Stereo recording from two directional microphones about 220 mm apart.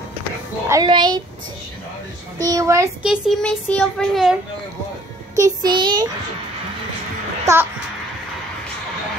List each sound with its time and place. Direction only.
0.7 s speech: 20° right (ahead or behind)
2.3 s speech: 15° right (ahead or behind); by 4.4 s centre (ahead or behind)
5.3 s child singing: 15° right (ahead or behind)